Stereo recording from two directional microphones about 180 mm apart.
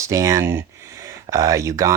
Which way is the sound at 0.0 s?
15° right (ahead or behind).